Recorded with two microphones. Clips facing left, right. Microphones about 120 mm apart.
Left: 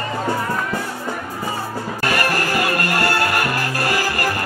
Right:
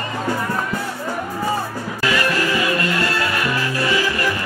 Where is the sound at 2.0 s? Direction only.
60° left (ahead or behind).